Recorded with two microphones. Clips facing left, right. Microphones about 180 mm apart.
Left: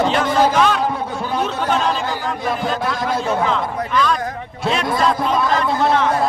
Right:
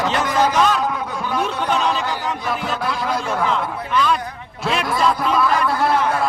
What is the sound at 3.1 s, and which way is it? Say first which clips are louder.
Speech: left 4 dB; 25° left (ahead or behind).